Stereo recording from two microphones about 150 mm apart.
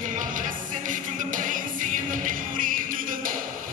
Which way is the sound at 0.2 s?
60° right (ahead or behind).